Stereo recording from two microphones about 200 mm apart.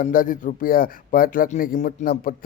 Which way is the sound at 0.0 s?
45° left (ahead or behind).